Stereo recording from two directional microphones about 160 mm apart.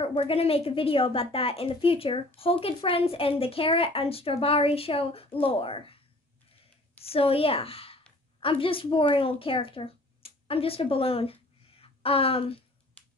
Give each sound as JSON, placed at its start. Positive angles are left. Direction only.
{"t": 0.0, "sound": "a woman's voice", "side_deg": 35}
{"t": 7.1, "sound": "a woman's voice", "side_deg": 35}
{"t": 11.8, "sound": "a sound", "side_deg": 35}